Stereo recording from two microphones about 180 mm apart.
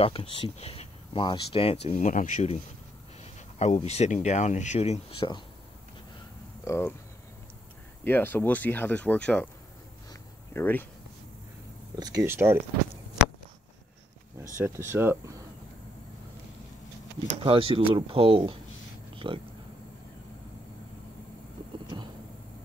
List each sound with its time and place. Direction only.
0.0 s speech: 30° left (ahead or behind)
6.6 s speech: 15° left (ahead or behind)
8.0 s speech: 10° left (ahead or behind)
10.5 s speech: 10° left (ahead or behind)
12.0 s speech: 15° right (ahead or behind)
14.6 s speech: 15° right (ahead or behind)
17.3 s speech: 30° right (ahead or behind)
19.1 s a sound: 30° right (ahead or behind)
21.8 s vehicle: 25° right (ahead or behind)